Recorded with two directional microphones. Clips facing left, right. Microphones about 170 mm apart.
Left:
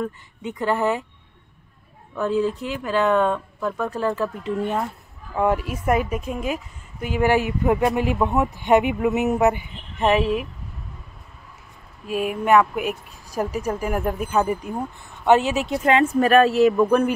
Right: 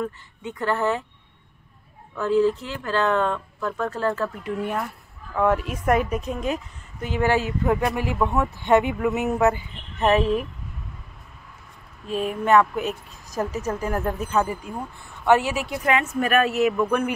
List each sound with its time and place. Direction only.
0.0 s a woman's voice: 15° left (ahead or behind)
2.1 s a woman's voice: 15° left (ahead or behind)
5.3 s a woman's voice: 10° left (ahead or behind)
12.1 s a woman's voice: 10° left (ahead or behind); by 17.1 s 35° left (ahead or behind)